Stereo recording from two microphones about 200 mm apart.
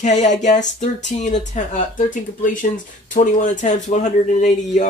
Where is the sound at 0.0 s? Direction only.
35° left (ahead or behind).